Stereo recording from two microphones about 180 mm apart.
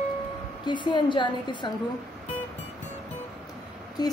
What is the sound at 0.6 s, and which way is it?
Speech, 25° left (ahead or behind).